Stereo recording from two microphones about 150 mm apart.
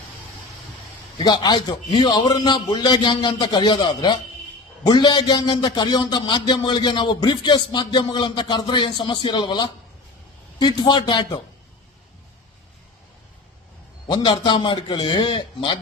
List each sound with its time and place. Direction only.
1.2 s a man's voice: 30° left (ahead or behind)
14.1 s a man's voice: 30° left (ahead or behind)